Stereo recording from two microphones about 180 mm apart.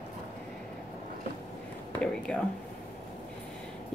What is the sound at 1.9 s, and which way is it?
Speech, 5° left (ahead or behind).